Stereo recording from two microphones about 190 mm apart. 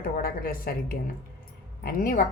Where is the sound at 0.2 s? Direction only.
50° left (ahead or behind).